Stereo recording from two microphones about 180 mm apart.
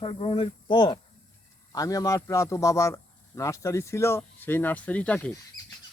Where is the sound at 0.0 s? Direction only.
30° left (ahead or behind).